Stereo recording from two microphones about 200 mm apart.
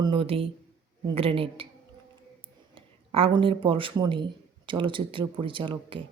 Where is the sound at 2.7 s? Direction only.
25° right (ahead or behind).